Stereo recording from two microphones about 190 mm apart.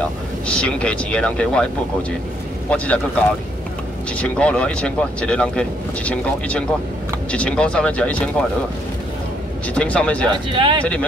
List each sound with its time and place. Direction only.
0.0 s speech: 5° left (ahead or behind)
2.7 s speech: 5° left (ahead or behind)
9.8 s speech: 5° left (ahead or behind)
10.3 s speech: 25° right (ahead or behind)
10.8 s speech: 5° left (ahead or behind)